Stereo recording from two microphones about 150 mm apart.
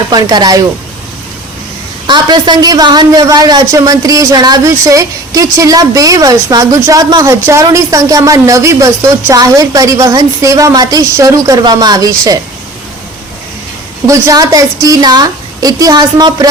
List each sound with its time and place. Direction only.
0.1 s speech: 25° right (ahead or behind)
2.0 s speech: 30° right (ahead or behind)
14.1 s speech: 25° right (ahead or behind)